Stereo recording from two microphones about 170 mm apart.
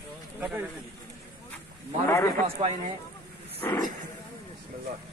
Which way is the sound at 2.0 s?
15° left (ahead or behind).